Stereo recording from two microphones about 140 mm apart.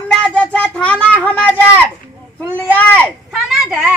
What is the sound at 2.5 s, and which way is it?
Speech, 10° left (ahead or behind).